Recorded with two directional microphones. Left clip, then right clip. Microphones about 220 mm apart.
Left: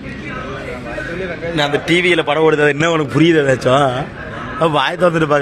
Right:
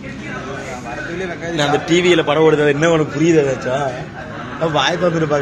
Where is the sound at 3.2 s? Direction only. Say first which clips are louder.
Left 2 dB; 40° left (ahead or behind).